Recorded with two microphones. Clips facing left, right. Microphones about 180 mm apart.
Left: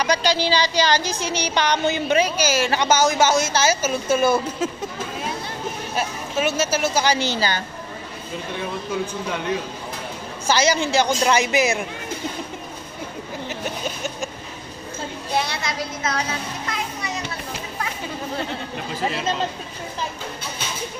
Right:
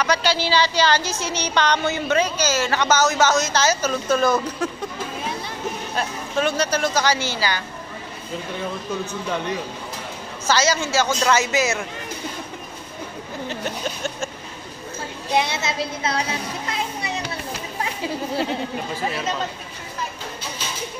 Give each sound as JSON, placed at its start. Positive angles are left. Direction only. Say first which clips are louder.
{"t": 0.0, "sound": "a woman's voice", "louder": "left 1 dB", "side_deg": 15}
{"t": 4.6, "sound": "speech", "louder": "left 1 dB", "side_deg": 25}
{"t": 5.9, "sound": "a woman's voice", "louder": "even", "side_deg": 5}
{"t": 10.4, "sound": "a woman's voice", "louder": "left 1 dB", "side_deg": 15}
{"t": 15.3, "sound": "speech", "louder": "right 3 dB", "side_deg": -20}
{"t": 16.6, "sound": "children playing", "louder": "right 1 dB", "side_deg": -30}